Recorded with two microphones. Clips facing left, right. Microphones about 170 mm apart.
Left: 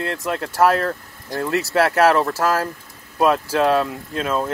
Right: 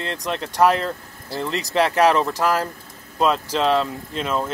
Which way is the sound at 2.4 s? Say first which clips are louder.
Left 1 dB; 15° right (ahead or behind).